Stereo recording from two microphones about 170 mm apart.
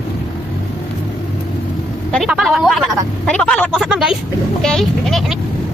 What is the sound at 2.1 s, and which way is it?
Speech, centre (ahead or behind).